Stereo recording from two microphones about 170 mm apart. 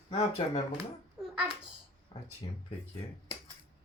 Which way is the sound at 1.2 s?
5° right (ahead or behind).